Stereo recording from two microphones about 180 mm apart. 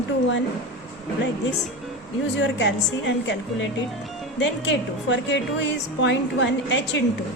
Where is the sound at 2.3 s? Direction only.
85° left.